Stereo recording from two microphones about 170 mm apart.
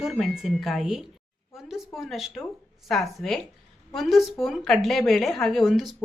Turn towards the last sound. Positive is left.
turn(degrees=0)  # may be behind; listen again after turning